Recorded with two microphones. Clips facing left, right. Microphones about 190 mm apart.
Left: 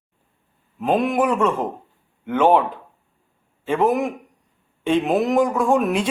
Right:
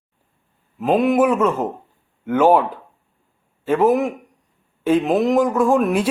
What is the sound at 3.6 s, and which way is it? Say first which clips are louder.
A man's voice: right 3 dB; 5° right (ahead or behind).